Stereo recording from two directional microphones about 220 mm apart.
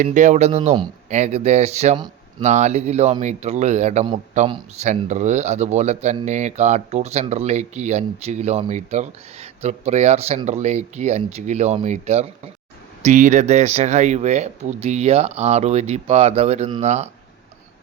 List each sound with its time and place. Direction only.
0.0 s speech: 35° right (ahead or behind)